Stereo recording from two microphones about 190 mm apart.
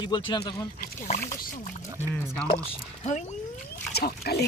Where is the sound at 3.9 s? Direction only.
55° left (ahead or behind).